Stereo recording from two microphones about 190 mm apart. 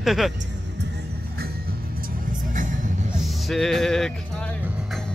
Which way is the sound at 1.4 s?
55° right (ahead or behind).